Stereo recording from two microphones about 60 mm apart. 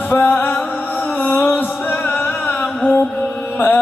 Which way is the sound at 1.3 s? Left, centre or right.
Left.